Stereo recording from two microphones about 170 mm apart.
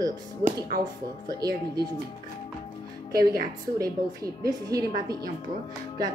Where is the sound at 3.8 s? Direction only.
20° right (ahead or behind).